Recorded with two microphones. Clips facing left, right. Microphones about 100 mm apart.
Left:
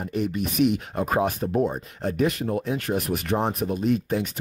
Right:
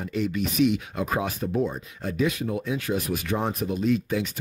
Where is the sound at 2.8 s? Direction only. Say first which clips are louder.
Left 1 dB; 55° left (ahead or behind).